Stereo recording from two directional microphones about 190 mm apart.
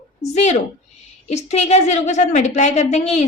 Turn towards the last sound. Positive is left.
turn(degrees=35)  # may be behind; listen again after turning